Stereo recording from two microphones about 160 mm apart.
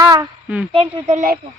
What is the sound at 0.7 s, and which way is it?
Speech, 40° right (ahead or behind).